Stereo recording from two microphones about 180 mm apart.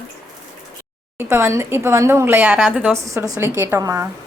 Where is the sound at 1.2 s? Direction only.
15° right (ahead or behind).